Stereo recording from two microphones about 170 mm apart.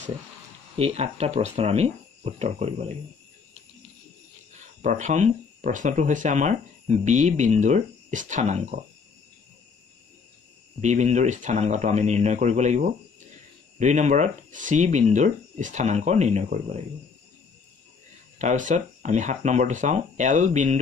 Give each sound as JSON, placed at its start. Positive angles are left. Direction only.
{"t": 0.7, "sound": "speech", "side_deg": -35}
{"t": 4.8, "sound": "speech", "side_deg": -45}
{"t": 10.8, "sound": "speech", "side_deg": -45}
{"t": 18.4, "sound": "speech", "side_deg": -45}